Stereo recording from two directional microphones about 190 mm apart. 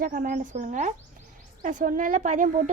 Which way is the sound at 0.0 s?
50° right (ahead or behind).